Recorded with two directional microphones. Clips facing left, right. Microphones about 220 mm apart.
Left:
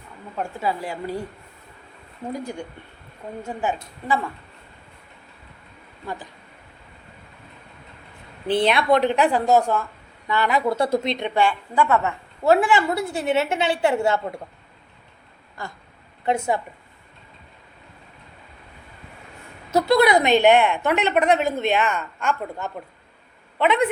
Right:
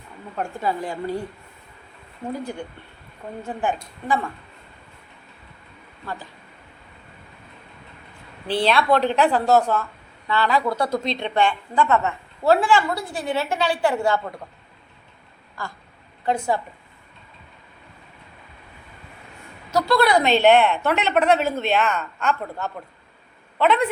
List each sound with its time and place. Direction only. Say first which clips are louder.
0.3 s a woman's voice: right 1 dB; 5° left (ahead or behind)
3.4 s a woman's voice: right 1 dB; 5° left (ahead or behind)
8.4 s a woman's voice: left 1 dB; 20° left (ahead or behind)
11.3 s a woman's voice: even; 10° left (ahead or behind); by 14.4 s 25° left (ahead or behind)
15.6 s a woman's voice: right 1 dB; 20° left (ahead or behind)
19.7 s a woman's voice: left 2 dB; 20° left (ahead or behind)